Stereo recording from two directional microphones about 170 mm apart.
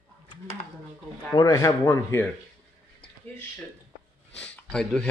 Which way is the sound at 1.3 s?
20° left (ahead or behind).